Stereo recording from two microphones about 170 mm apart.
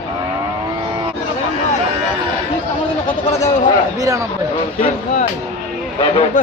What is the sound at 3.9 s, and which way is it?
Speech, 20° right (ahead or behind).